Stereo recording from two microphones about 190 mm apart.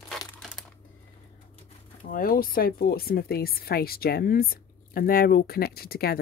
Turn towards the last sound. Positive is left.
turn(degrees=55)  # may be behind; listen again after turning